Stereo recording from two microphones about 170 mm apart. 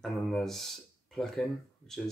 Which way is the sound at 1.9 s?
Centre (ahead or behind).